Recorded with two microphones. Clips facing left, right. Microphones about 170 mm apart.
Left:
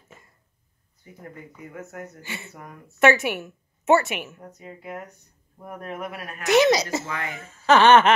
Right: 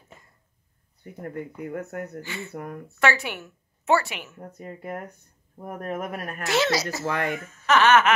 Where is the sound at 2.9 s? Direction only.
20° left (ahead or behind).